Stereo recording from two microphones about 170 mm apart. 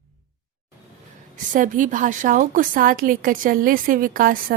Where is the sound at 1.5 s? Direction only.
50° right (ahead or behind).